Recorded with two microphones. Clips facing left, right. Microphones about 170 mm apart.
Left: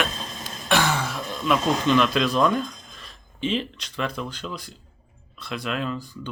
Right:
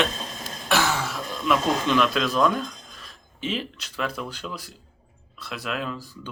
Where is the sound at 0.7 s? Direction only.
5° right (ahead or behind).